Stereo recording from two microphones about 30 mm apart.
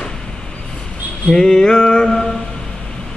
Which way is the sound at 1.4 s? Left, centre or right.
Left.